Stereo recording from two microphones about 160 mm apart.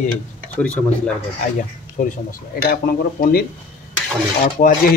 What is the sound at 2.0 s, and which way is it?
Speech, 60° left (ahead or behind).